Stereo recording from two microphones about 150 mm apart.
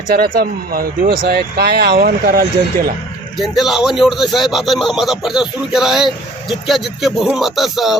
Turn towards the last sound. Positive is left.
turn(degrees=0)  # may be behind; listen again after turning